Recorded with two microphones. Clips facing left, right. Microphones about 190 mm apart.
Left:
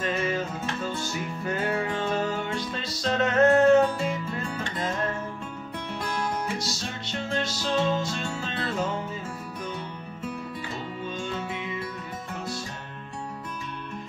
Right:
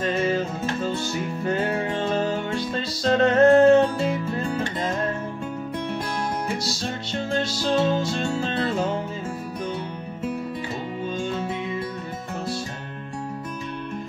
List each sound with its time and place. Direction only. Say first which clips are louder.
0.0 s music: right 5 dB; 30° right (ahead or behind)
7.2 s music: right 5 dB; 30° right (ahead or behind)